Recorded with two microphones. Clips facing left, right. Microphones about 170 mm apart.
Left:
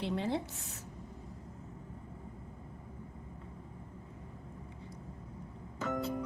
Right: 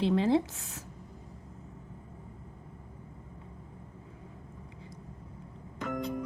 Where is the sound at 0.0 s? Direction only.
90° right.